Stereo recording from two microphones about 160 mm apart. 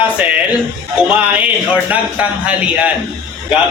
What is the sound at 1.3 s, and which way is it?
Speech, 10° right (ahead or behind).